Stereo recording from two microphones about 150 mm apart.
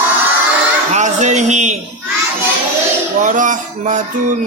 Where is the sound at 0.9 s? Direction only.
50° right (ahead or behind).